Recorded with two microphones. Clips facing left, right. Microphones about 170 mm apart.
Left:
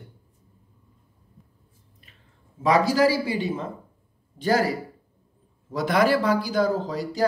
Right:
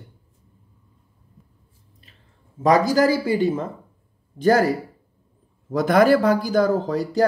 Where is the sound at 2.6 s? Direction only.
45° right (ahead or behind).